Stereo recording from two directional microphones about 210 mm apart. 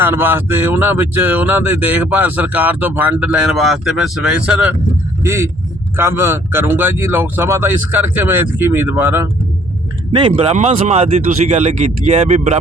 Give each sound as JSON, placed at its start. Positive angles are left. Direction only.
{"t": 0.0, "sound": "speech", "side_deg": -10}
{"t": 10.1, "sound": "speech", "side_deg": -25}